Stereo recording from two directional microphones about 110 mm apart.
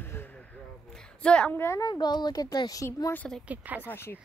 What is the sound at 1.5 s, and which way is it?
Speech, 25° left (ahead or behind).